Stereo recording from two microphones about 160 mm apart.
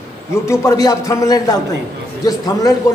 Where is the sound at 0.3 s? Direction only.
20° left (ahead or behind).